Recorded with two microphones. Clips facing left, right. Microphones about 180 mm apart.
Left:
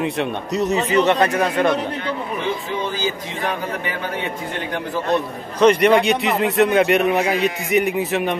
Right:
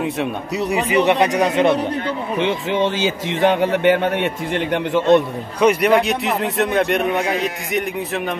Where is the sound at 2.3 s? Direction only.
80° right.